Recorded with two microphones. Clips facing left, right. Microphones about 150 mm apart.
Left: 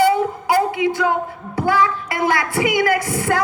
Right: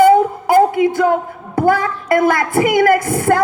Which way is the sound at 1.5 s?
50° right (ahead or behind).